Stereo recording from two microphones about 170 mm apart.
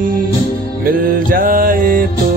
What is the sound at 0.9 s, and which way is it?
Mantra, 55° right (ahead or behind).